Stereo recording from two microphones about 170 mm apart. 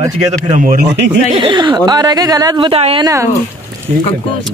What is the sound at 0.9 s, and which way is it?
Speech, 90° right.